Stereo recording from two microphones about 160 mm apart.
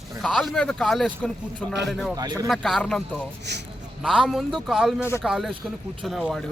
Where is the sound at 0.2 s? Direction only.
Centre (ahead or behind).